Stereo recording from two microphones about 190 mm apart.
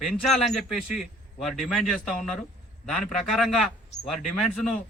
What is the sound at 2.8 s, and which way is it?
A man's voice, centre (ahead or behind).